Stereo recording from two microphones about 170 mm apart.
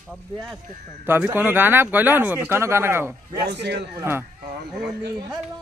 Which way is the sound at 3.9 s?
15° right (ahead or behind).